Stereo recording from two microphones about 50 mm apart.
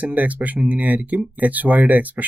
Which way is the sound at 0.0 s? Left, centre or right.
Right.